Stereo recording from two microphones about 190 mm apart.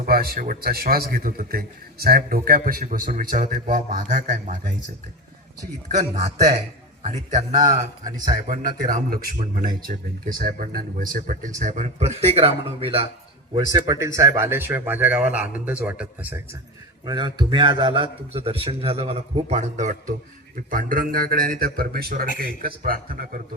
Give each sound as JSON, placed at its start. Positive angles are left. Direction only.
{"t": 0.0, "sound": "a man's voice", "side_deg": -50}
{"t": 6.0, "sound": "a man's voice", "side_deg": -35}
{"t": 13.7, "sound": "a man's voice", "side_deg": -20}
{"t": 17.1, "sound": "a man's voice", "side_deg": -20}